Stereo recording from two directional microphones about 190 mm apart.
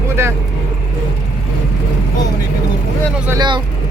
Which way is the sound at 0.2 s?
15° right (ahead or behind).